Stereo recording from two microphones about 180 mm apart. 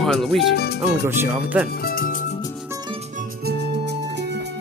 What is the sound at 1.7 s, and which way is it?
Music, 55° left (ahead or behind).